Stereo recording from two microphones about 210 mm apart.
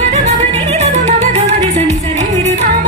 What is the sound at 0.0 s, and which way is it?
Music, 30° right (ahead or behind).